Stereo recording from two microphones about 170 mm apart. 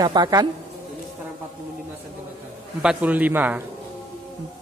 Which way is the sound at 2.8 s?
5° right (ahead or behind).